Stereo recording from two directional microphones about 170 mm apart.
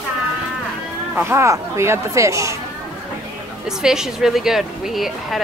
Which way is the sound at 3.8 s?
5° right (ahead or behind).